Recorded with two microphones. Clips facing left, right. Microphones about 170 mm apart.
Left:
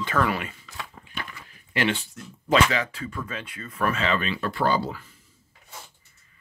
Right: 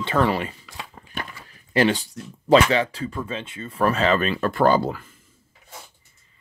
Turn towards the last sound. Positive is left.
turn(degrees=-50)  # may be behind; listen again after turning